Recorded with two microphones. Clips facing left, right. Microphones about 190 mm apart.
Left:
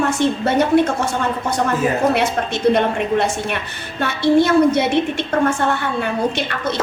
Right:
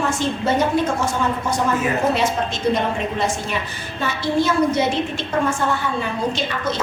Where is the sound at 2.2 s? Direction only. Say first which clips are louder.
Left 2 dB; 65° left (ahead or behind).